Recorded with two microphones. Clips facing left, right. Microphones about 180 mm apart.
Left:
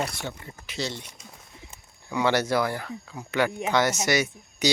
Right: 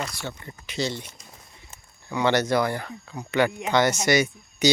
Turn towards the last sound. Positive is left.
turn(degrees=0)  # may be behind; listen again after turning